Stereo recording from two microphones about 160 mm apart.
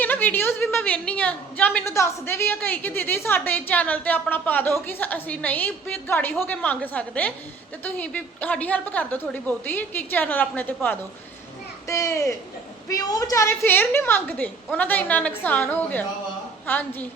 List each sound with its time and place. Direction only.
0.0 s a woman's voice: 10° left (ahead or behind)